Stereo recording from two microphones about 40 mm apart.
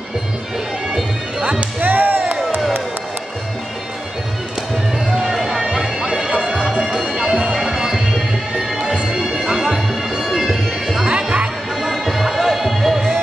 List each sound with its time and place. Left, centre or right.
1.8 s music: right
5.1 s music: centre
11.1 s music: right
11.8 s music: centre